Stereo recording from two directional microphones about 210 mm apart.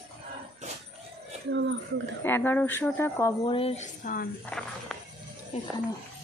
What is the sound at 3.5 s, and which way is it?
Speech, 30° left (ahead or behind).